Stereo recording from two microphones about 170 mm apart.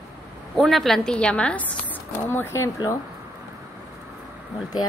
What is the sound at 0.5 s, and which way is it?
A woman's voice, centre (ahead or behind).